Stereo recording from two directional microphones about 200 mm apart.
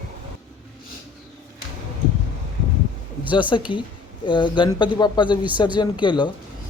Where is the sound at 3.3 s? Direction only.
25° left (ahead or behind).